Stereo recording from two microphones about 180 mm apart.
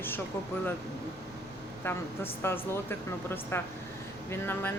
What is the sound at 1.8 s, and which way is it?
Speech, 10° left (ahead or behind).